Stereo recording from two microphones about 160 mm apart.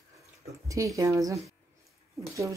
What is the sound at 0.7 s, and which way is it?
Speech, 20° right (ahead or behind).